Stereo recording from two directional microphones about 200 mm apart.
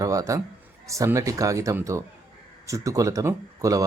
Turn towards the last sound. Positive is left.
turn(degrees=-15)  # may be behind; listen again after turning